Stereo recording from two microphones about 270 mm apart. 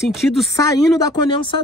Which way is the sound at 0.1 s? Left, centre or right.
Centre.